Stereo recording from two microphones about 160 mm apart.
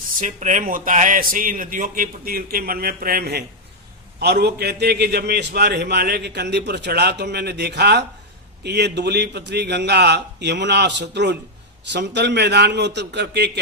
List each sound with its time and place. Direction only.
0.2 s speech: 50° right (ahead or behind); by 3.4 s 75° right (ahead or behind)
4.2 s a man's voice: 90° right